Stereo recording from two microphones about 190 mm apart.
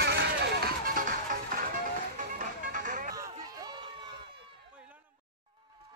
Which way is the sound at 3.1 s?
20° right (ahead or behind).